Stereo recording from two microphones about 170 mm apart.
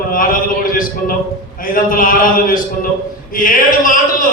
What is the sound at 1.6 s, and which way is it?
A man's voice, 55° left (ahead or behind).